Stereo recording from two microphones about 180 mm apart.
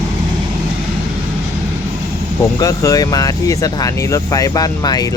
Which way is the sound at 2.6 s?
20° left (ahead or behind).